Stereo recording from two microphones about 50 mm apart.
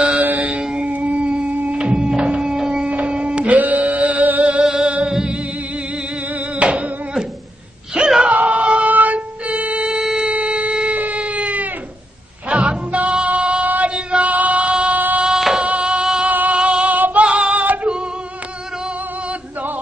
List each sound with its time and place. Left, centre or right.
0.2 s mantra: right
0.5 s mantra: centre
0.8 s a sound: right
1.8 s music: centre
8.2 s music: right
9.8 s a sound: centre
10.3 s a sound: right
11.0 s cat: right
12.4 s music: right
13.8 s female singing: right
15.3 s music: centre
15.6 s music: right
16.3 s music: right
16.5 s female singing: right